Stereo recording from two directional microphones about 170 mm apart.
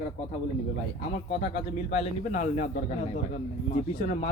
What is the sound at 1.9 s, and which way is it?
Speech, 40° left (ahead or behind).